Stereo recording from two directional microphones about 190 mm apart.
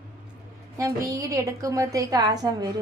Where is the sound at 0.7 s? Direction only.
15° right (ahead or behind).